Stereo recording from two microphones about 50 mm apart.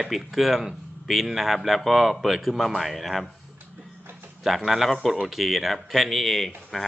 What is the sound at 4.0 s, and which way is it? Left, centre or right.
Music, right.